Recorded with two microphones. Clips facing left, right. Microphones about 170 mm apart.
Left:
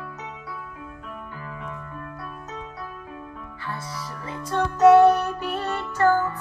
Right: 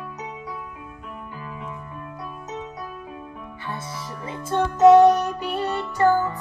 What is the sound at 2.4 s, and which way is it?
Keyboard, 20° right (ahead or behind).